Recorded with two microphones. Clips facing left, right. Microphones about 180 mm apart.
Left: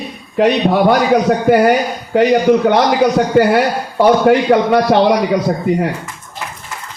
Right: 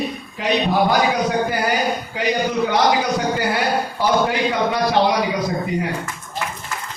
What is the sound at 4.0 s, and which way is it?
A man's voice, 65° left (ahead or behind).